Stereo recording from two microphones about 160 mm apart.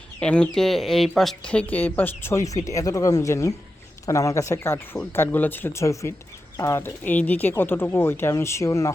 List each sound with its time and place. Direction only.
0.2 s speech: 5° left (ahead or behind)